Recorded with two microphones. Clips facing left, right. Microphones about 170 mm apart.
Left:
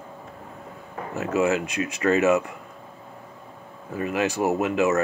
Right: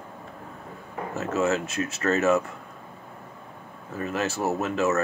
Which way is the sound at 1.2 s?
15° left (ahead or behind).